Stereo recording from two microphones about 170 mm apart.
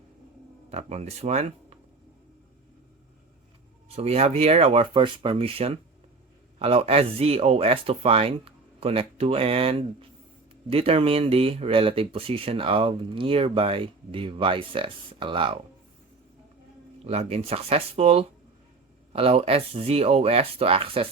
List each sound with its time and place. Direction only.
0.7 s speech: 40° right (ahead or behind)
3.8 s speech: 35° right (ahead or behind)
17.0 s speech: 40° right (ahead or behind)